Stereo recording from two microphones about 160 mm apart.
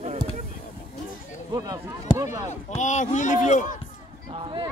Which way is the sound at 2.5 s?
45° left (ahead or behind).